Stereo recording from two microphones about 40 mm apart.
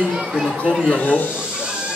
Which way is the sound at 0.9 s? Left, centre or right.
Left.